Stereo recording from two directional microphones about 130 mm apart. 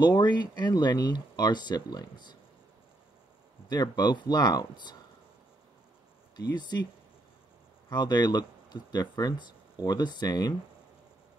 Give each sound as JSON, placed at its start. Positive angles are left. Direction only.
{"t": 0.0, "sound": "speech", "side_deg": 35}
{"t": 3.6, "sound": "speech", "side_deg": 30}
{"t": 6.3, "sound": "speech", "side_deg": 30}
{"t": 7.9, "sound": "speech", "side_deg": 35}